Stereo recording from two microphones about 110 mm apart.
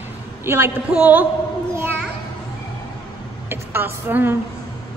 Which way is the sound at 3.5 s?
20° right (ahead or behind).